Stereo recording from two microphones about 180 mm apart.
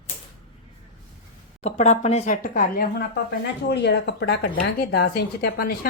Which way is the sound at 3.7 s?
70° left (ahead or behind).